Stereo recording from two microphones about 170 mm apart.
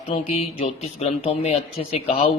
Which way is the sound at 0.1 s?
35° left (ahead or behind).